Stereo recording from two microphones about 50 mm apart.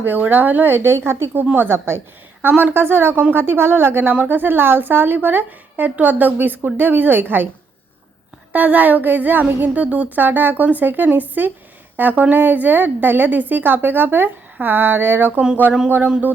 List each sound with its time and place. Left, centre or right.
0.0 s a woman's voice: right
2.4 s a woman's voice: right
2.7 s a woman's voice: right
8.5 s a woman's voice: right
10.2 s a woman's voice: right